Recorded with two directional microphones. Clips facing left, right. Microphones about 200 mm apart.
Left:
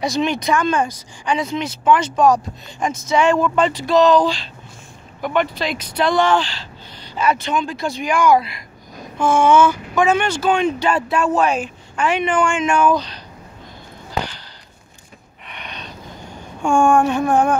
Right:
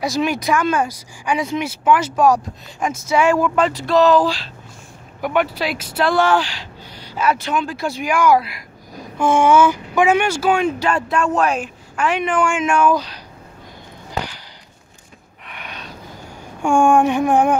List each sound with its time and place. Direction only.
0.0 s speech: 5° right (ahead or behind)
15.4 s a sound: 5° right (ahead or behind)
16.6 s speech: 15° right (ahead or behind)